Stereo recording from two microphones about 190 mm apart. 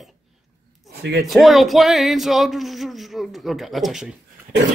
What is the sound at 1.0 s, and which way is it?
Speech, 60° right (ahead or behind).